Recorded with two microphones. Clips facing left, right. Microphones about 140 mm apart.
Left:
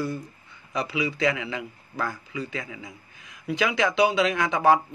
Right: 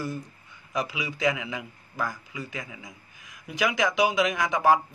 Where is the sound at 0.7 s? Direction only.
15° right (ahead or behind).